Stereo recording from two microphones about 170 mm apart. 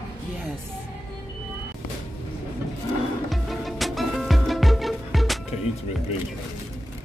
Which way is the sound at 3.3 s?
Centre (ahead or behind).